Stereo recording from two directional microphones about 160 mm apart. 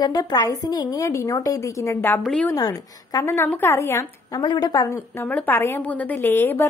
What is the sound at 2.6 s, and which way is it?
A woman's voice, 25° left (ahead or behind).